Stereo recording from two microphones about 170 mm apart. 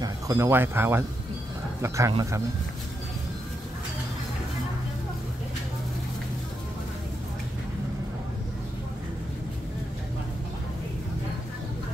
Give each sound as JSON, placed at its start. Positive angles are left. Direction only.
{"t": 0.0, "sound": "a man's voice", "side_deg": -15}